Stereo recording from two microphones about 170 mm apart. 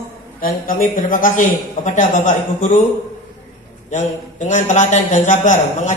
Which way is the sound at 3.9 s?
45° left (ahead or behind).